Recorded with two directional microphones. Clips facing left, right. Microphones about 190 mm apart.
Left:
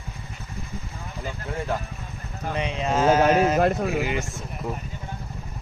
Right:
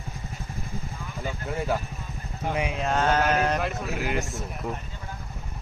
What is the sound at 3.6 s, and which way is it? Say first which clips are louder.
Speech: left 9 dB; 40° left (ahead or behind).